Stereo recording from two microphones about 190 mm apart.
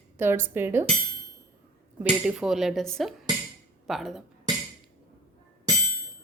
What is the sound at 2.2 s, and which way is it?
Music, 5° right (ahead or behind).